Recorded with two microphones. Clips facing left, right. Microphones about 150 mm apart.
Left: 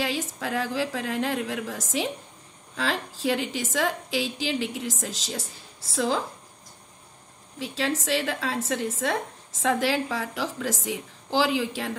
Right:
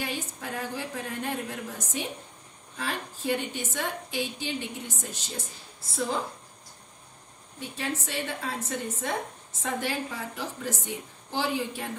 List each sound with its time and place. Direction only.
0.0 s a woman's voice: 90° left
7.5 s a woman's voice: 90° left